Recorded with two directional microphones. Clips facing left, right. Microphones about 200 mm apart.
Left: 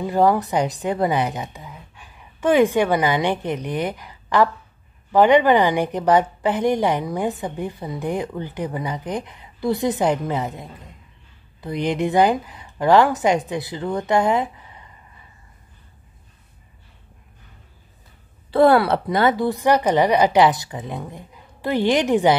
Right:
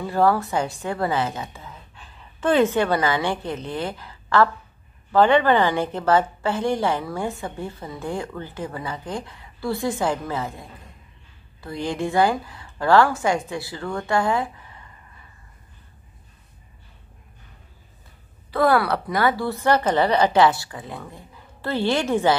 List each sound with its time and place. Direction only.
0.0 s a woman's voice: 15° left (ahead or behind)
18.5 s a woman's voice: 30° left (ahead or behind)